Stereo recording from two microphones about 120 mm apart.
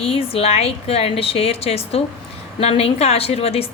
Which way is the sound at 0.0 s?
55° left (ahead or behind).